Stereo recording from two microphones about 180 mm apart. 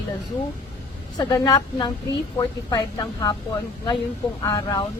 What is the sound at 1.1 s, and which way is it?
A woman's voice, 20° left (ahead or behind).